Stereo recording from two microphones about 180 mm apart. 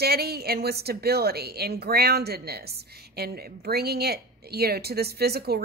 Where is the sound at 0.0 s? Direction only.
60° right (ahead or behind).